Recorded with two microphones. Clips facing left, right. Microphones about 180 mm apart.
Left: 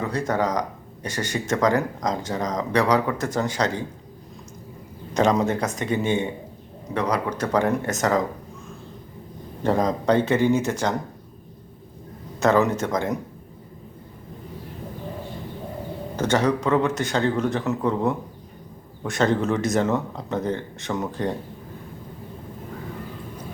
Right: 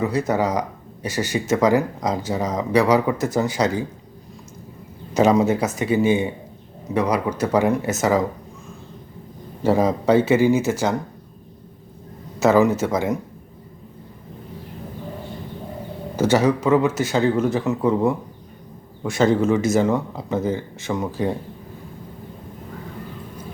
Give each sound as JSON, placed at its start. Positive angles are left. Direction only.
{"t": 0.0, "sound": "speech", "side_deg": -10}
{"t": 5.1, "sound": "speech", "side_deg": -5}
{"t": 9.6, "sound": "speech", "side_deg": -5}
{"t": 12.4, "sound": "speech", "side_deg": -5}
{"t": 16.1, "sound": "speech", "side_deg": -5}